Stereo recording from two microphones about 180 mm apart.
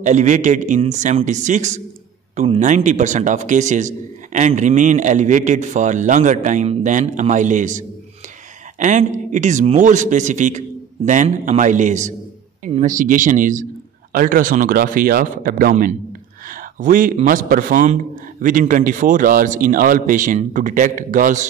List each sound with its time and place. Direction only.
0.0 s a man's voice: 40° right (ahead or behind)